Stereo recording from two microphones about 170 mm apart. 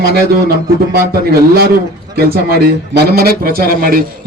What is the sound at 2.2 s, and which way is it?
A man's voice, 65° right (ahead or behind).